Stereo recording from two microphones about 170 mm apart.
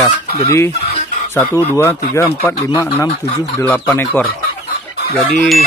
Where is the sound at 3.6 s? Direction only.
10° left (ahead or behind).